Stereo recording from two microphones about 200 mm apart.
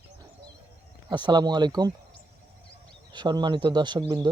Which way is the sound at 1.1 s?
20° right (ahead or behind).